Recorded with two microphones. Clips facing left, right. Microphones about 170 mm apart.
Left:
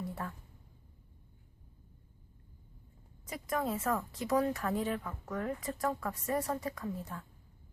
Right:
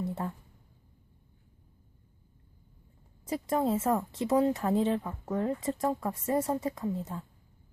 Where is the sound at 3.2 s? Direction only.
30° right (ahead or behind).